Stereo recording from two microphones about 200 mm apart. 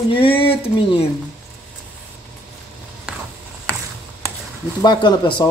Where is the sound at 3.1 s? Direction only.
5° right (ahead or behind).